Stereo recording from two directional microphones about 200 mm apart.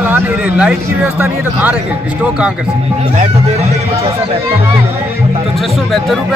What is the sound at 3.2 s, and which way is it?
Speech, 30° right (ahead or behind).